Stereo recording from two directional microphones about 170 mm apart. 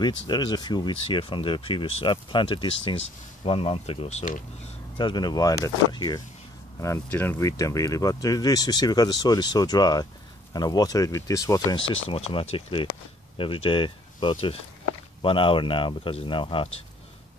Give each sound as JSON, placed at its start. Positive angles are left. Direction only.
{"t": 0.3, "sound": "speech", "side_deg": 25}
{"t": 4.2, "sound": "speech", "side_deg": 50}
{"t": 4.9, "sound": "speech", "side_deg": 25}
{"t": 6.8, "sound": "speech", "side_deg": 15}
{"t": 11.9, "sound": "speech", "side_deg": 30}